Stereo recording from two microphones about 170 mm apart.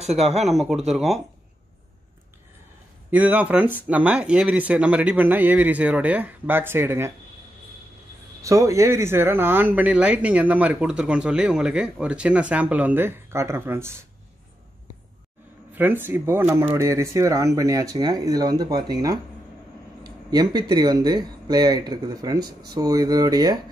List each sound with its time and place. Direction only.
0.2 s speech: centre (ahead or behind)
3.1 s speech: 10° right (ahead or behind)
8.4 s speech: 20° right (ahead or behind)
15.7 s speech: 10° right (ahead or behind)
20.2 s speech: 25° right (ahead or behind)